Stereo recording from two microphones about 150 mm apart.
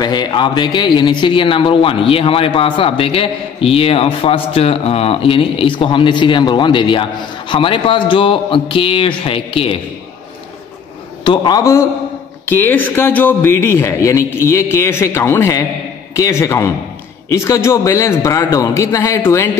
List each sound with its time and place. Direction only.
0.0 s a man's voice: 30° left (ahead or behind)
11.2 s a man's voice: 25° left (ahead or behind)
12.4 s a man's voice: 15° left (ahead or behind)